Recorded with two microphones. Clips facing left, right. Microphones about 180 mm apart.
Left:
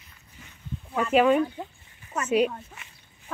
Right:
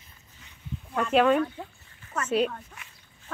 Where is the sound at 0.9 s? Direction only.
5° left (ahead or behind).